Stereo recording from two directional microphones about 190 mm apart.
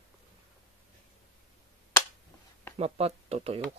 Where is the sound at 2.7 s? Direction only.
35° right (ahead or behind).